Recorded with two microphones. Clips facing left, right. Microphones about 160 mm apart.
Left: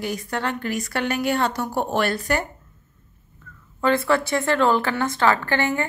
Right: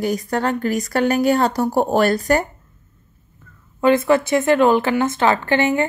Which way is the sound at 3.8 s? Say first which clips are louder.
Right 5 dB; 20° right (ahead or behind).